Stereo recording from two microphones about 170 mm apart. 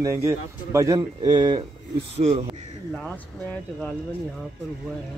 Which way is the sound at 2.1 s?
35° right (ahead or behind).